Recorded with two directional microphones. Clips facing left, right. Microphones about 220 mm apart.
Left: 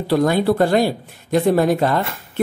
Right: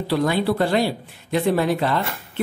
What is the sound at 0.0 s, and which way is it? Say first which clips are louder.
Speech: left 4 dB; 45° left (ahead or behind).